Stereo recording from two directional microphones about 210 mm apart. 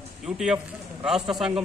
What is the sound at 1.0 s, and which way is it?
Speech, centre (ahead or behind).